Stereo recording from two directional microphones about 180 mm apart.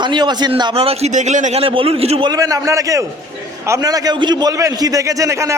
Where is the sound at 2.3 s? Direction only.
20° right (ahead or behind).